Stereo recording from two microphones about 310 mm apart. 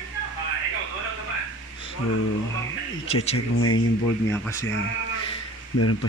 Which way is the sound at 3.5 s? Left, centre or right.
Left.